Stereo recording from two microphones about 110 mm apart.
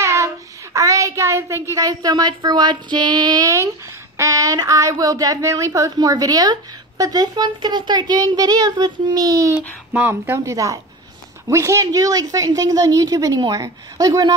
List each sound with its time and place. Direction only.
0.0 s child singing: 25° right (ahead or behind)
0.7 s a woman's voice: 30° right (ahead or behind)
9.9 s a woman's voice: 15° right (ahead or behind); by 14.3 s 35° right (ahead or behind)